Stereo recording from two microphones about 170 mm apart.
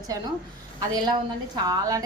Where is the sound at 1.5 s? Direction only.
20° right (ahead or behind).